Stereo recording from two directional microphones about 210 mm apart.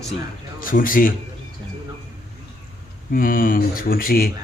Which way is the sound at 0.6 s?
40° left (ahead or behind).